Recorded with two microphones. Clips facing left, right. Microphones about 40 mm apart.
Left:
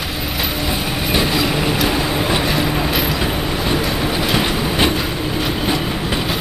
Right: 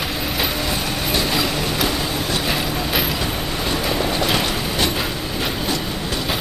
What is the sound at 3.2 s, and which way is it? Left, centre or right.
Vehicle, centre.